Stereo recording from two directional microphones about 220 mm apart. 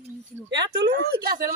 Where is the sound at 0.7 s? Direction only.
50° right (ahead or behind).